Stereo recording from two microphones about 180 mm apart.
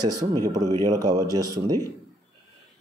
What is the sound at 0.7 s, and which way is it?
Speech, 20° right (ahead or behind).